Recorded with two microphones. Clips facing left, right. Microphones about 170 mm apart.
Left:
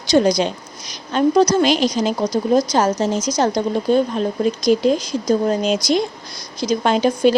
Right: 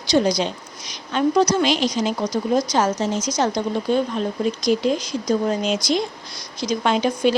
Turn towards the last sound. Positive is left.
turn(degrees=40)  # may be behind; listen again after turning